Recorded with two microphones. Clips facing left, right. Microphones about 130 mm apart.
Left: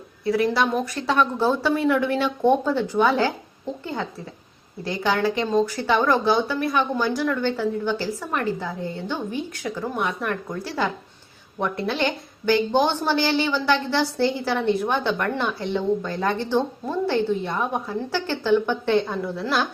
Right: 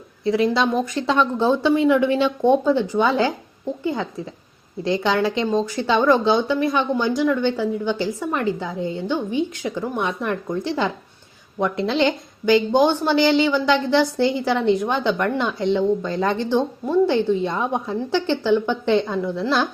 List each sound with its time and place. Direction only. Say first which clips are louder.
0.3 s speech: right 2 dB; 25° right (ahead or behind)
4.8 s speech: right 3 dB; 25° right (ahead or behind)